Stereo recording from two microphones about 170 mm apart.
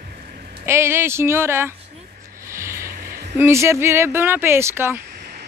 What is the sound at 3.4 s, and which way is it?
Speech, 15° right (ahead or behind).